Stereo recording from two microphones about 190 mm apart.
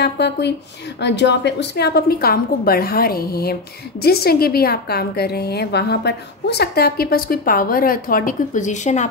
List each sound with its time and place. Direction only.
0.0 s a woman's voice: 60° left (ahead or behind); by 9.1 s 40° left (ahead or behind)